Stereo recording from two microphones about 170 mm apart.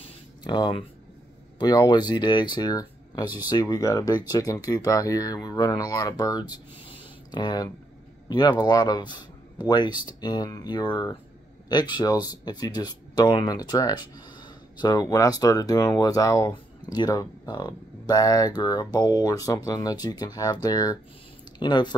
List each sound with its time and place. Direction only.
0.4 s speech: 25° left (ahead or behind)